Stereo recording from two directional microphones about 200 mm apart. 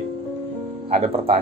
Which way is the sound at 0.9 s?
30° right (ahead or behind).